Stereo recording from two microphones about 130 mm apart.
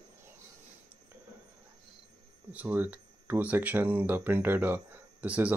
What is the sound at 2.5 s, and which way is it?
Speech, 15° right (ahead or behind).